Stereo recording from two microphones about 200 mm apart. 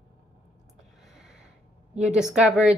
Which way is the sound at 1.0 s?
5° right (ahead or behind).